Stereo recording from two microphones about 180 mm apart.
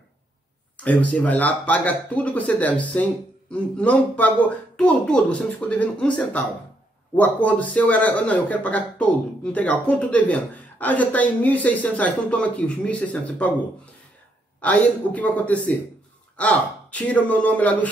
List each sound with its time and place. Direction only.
0.8 s speech: 10° left (ahead or behind)
14.6 s speech: 5° left (ahead or behind)